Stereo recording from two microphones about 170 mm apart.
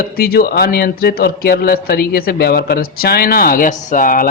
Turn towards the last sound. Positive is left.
turn(degrees=50)  # may be behind; listen again after turning